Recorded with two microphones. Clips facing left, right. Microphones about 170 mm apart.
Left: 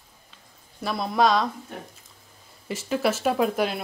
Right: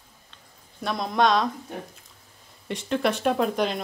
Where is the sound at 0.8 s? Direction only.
5° left (ahead or behind).